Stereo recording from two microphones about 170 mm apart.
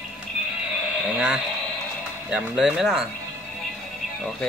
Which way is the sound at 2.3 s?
5° right (ahead or behind).